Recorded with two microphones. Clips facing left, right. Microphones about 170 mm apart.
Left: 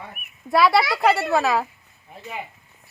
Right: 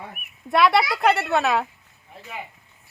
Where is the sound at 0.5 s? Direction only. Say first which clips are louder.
Left 1 dB; centre (ahead or behind).